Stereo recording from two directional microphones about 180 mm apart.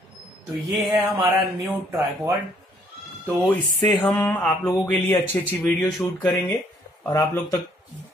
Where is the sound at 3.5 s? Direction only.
10° left (ahead or behind).